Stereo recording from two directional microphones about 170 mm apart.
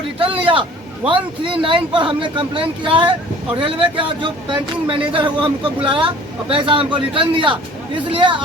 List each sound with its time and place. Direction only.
0.3 s speech: 30° right (ahead or behind)